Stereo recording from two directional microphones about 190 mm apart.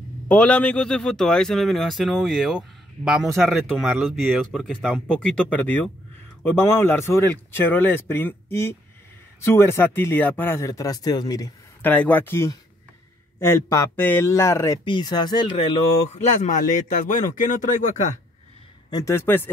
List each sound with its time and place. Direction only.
0.3 s speech: 5° left (ahead or behind); by 18.1 s 40° left (ahead or behind)
18.9 s speech: 20° left (ahead or behind)